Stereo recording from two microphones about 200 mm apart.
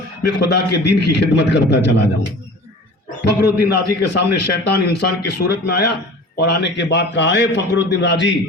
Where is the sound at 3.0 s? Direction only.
55° left (ahead or behind).